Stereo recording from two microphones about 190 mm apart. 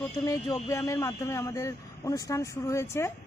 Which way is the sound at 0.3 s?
20° left (ahead or behind).